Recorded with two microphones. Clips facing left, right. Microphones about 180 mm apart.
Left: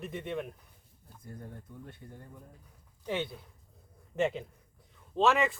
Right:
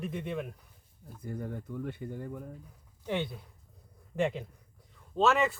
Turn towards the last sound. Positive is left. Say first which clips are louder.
# even
turn(degrees=0)  # may be behind; listen again after turning